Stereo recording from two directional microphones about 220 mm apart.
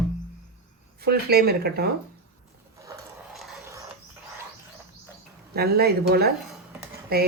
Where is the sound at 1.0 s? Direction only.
45° right (ahead or behind).